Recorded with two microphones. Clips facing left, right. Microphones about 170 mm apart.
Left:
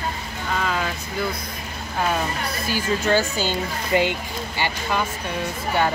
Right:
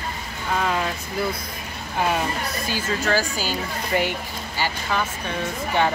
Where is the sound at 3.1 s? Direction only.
25° left (ahead or behind).